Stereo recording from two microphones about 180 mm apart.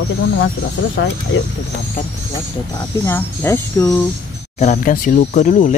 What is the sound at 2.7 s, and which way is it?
Speech, 10° left (ahead or behind).